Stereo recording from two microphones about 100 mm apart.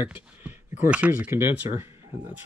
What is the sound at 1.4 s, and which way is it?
Speech, 25° right (ahead or behind).